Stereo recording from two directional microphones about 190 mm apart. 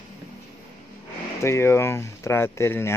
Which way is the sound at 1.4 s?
15° left (ahead or behind).